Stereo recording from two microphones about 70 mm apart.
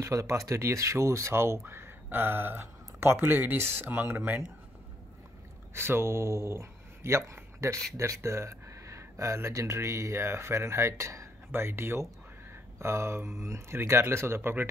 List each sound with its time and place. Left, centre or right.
0.0 s speech: right
5.8 s speech: right